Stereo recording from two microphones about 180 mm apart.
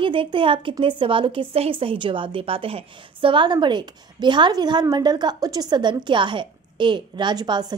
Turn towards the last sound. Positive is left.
turn(degrees=-25)  # may be behind; listen again after turning